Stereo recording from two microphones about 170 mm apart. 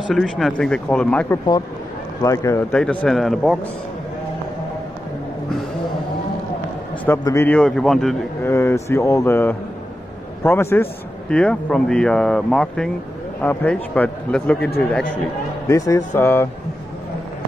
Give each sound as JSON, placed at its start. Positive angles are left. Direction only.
{"t": 0.1, "sound": "speech", "side_deg": 0}
{"t": 2.2, "sound": "a man's voice", "side_deg": 20}
{"t": 2.7, "sound": "speech", "side_deg": 5}
{"t": 7.1, "sound": "speech", "side_deg": 15}
{"t": 8.5, "sound": "a man's voice", "side_deg": 15}
{"t": 15.7, "sound": "a man's voice", "side_deg": 20}